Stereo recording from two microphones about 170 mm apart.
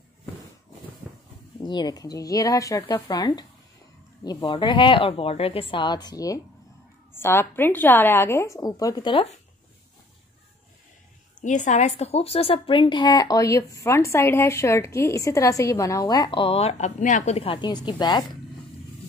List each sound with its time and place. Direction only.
1.6 s a woman's voice: 25° left (ahead or behind)
11.4 s a woman's voice: 45° left (ahead or behind); by 18.4 s 25° left (ahead or behind)